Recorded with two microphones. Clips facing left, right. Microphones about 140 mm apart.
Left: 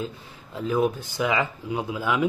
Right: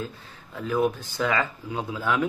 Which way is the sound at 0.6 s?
15° left (ahead or behind).